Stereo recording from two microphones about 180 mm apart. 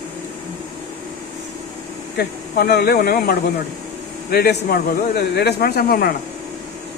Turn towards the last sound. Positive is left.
turn(degrees=60)  # may be behind; listen again after turning